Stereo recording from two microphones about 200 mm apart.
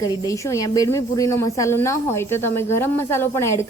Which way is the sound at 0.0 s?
15° left (ahead or behind).